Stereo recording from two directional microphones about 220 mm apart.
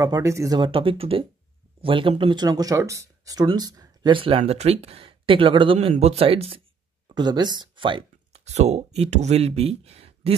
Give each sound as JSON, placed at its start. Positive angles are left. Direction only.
{"t": 0.0, "sound": "speech", "side_deg": -15}